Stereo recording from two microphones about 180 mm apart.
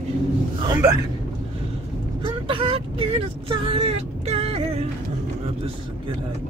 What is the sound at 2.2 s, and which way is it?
Speech, 30° right (ahead or behind).